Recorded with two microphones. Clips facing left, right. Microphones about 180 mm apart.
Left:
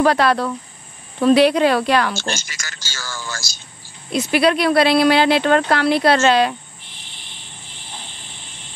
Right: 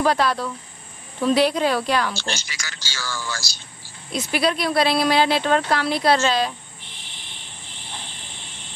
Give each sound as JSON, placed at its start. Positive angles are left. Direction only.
{"t": 0.0, "sound": "speech", "side_deg": 70}
{"t": 2.1, "sound": "speech", "side_deg": 45}
{"t": 4.1, "sound": "speech", "side_deg": 70}